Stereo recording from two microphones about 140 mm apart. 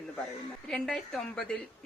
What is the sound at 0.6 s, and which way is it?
Speech, 5° left (ahead or behind).